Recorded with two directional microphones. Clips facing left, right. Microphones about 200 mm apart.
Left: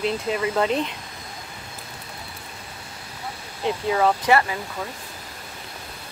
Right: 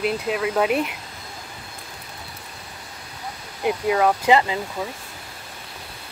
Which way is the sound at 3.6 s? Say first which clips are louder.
Right 1 dB; 10° right (ahead or behind).